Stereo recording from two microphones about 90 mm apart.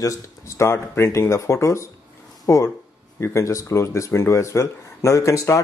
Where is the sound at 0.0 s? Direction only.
35° left (ahead or behind).